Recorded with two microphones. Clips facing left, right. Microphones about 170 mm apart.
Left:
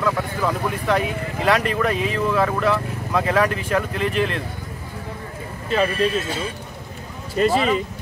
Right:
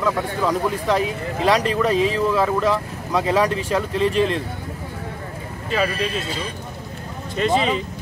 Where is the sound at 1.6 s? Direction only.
30° right (ahead or behind).